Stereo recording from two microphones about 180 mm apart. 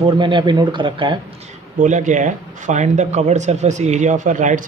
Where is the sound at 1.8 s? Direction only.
45° right (ahead or behind).